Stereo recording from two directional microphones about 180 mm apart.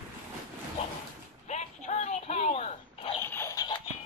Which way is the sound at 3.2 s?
15° left (ahead or behind).